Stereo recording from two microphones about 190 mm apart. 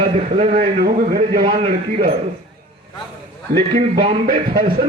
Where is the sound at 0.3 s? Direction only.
40° right (ahead or behind).